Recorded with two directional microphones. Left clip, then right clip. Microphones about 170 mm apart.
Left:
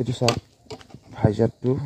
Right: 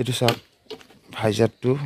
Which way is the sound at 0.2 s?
10° right (ahead or behind).